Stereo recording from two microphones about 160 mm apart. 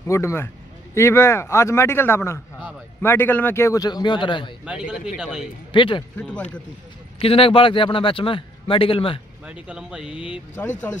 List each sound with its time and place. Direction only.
0.0 s a man's voice: 15° left (ahead or behind)
4.6 s a man's voice: 5° right (ahead or behind)
5.7 s a man's voice: 30° left (ahead or behind)
6.1 s a man's voice: 5° left (ahead or behind)
7.2 s a man's voice: 35° left (ahead or behind)
9.5 s a man's voice: 5° right (ahead or behind)
10.1 s a man's voice: 35° left (ahead or behind)
10.9 s a man's voice: 15° left (ahead or behind)